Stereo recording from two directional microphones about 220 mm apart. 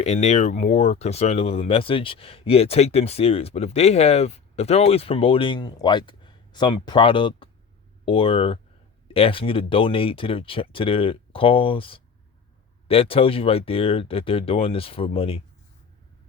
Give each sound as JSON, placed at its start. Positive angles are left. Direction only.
{"t": 0.0, "sound": "speech", "side_deg": 30}